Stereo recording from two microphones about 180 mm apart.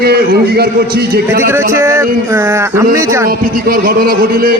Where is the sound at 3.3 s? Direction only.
55° right (ahead or behind).